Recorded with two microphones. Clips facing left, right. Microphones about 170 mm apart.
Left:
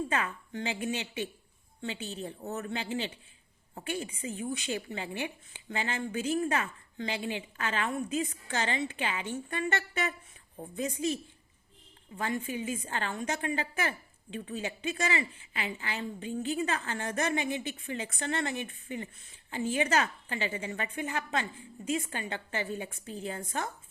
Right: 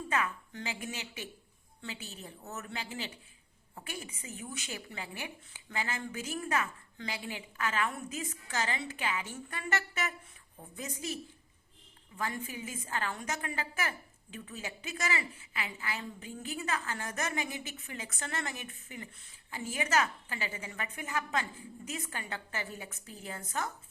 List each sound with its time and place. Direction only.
0.5 s a woman's voice: 30° left (ahead or behind)